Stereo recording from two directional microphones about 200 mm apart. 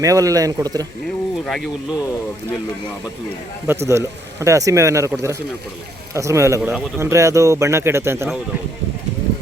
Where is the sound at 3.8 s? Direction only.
15° right (ahead or behind).